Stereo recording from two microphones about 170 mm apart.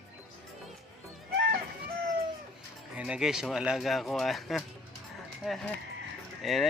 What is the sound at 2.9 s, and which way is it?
Speech, 5° right (ahead or behind).